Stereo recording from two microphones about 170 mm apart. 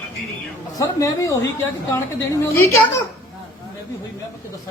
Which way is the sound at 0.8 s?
20° left (ahead or behind).